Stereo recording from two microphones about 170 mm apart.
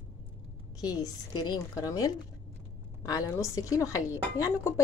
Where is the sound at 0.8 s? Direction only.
20° left (ahead or behind).